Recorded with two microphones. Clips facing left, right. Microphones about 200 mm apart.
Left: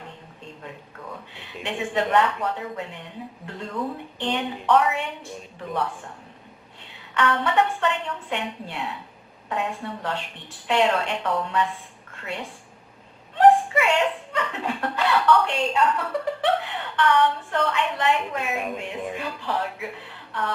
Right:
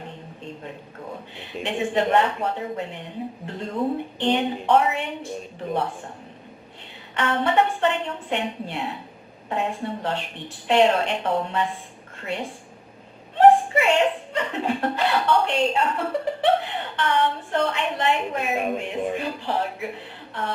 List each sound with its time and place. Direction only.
0.6 s speech: 25° right (ahead or behind)
7.1 s speech: 25° right (ahead or behind)